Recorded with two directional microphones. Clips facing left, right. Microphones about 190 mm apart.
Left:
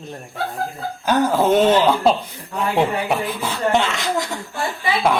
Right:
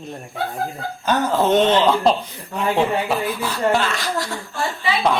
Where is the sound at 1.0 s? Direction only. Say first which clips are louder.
Left 2 dB; 10° left (ahead or behind).